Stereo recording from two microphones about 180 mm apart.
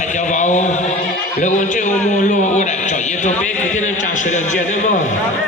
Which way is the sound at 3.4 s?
45° left (ahead or behind).